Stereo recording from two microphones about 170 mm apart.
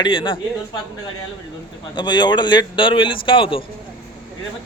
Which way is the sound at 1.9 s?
25° left (ahead or behind).